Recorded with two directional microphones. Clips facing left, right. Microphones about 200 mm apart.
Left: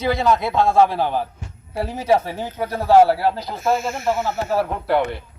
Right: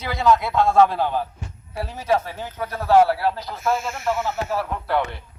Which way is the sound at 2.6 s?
35° left (ahead or behind).